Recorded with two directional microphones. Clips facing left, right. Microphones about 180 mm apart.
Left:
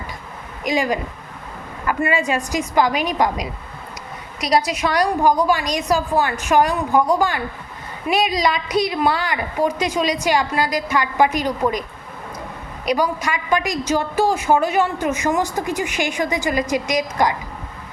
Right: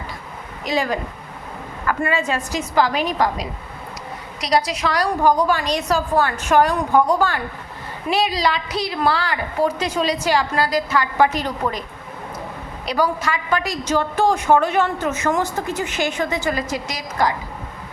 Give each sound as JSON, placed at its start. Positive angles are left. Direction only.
{"t": 0.6, "sound": "a woman's voice", "side_deg": 15}
{"t": 12.8, "sound": "a woman's voice", "side_deg": 15}